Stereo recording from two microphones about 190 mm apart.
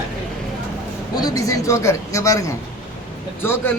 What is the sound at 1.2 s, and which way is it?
A man's voice, 20° left (ahead or behind).